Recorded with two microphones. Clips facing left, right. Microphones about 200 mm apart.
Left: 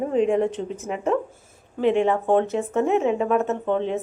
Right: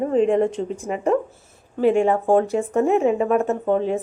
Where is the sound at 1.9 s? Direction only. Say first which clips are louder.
Right 1 dB; 45° right (ahead or behind).